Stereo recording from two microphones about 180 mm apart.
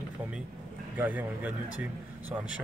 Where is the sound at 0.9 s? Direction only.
10° right (ahead or behind).